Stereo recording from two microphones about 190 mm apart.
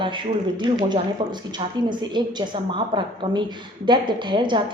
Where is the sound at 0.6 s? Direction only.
20° right (ahead or behind).